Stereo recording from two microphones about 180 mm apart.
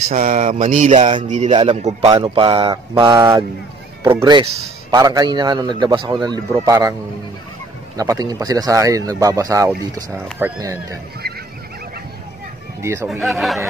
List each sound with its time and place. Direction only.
0.1 s mantra: 45° right (ahead or behind)
1.2 s mantra: 40° right (ahead or behind)
1.5 s speech: 25° right (ahead or behind)
1.8 s speech: 35° right (ahead or behind); by 7.0 s 20° right (ahead or behind)
8.0 s speech: 20° right (ahead or behind)
12.8 s speech: 15° right (ahead or behind)
13.1 s speech: centre (ahead or behind)